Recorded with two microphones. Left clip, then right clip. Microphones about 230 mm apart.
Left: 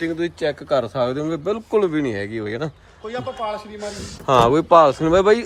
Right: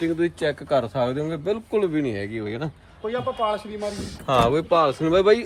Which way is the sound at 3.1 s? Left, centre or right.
Right.